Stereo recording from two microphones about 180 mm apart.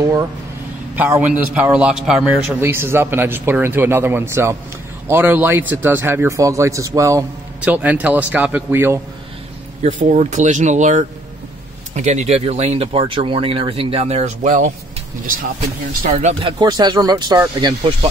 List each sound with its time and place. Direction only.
0.0 s a man's voice: 20° right (ahead or behind)
9.8 s speech: 40° right (ahead or behind)
16.1 s speech: 40° right (ahead or behind)
16.3 s speech: 25° right (ahead or behind)